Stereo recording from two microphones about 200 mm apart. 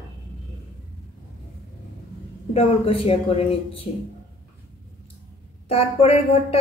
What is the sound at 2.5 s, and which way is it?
A woman's voice, 30° left (ahead or behind).